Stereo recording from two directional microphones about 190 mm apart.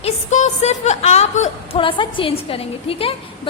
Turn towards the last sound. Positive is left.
turn(degrees=30)  # may be behind; listen again after turning